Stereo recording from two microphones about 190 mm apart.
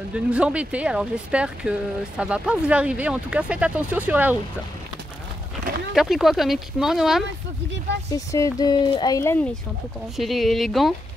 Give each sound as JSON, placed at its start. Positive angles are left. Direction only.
{"t": 0.1, "sound": "speech", "side_deg": -5}
{"t": 5.9, "sound": "speech", "side_deg": 0}
{"t": 7.9, "sound": "speech", "side_deg": -65}
{"t": 8.3, "sound": "speech", "side_deg": 20}
{"t": 10.1, "sound": "speech", "side_deg": 0}